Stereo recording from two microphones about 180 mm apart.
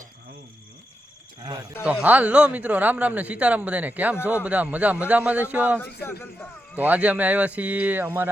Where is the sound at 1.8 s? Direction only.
10° right (ahead or behind).